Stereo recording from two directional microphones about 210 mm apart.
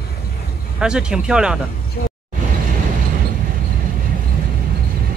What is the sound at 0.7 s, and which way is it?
Speech, 5° right (ahead or behind).